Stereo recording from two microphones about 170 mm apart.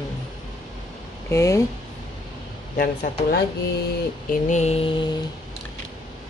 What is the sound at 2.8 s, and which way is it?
Speech, 60° left (ahead or behind).